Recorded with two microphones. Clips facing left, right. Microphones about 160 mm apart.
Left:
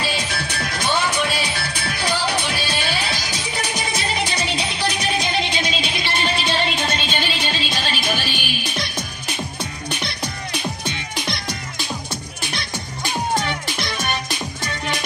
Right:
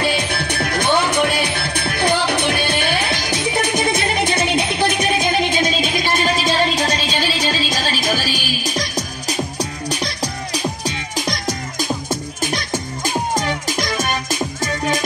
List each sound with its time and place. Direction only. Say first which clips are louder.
0.0 s music: right 5 dB; 60° right (ahead or behind)